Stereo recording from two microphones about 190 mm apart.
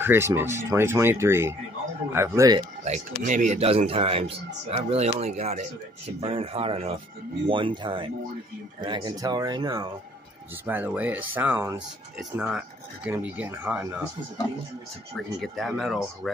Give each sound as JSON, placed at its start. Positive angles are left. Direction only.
{"t": 0.0, "sound": "speech", "side_deg": -15}
{"t": 2.8, "sound": "speech", "side_deg": -40}
{"t": 10.6, "sound": "speech", "side_deg": -10}
{"t": 15.1, "sound": "speech", "side_deg": 0}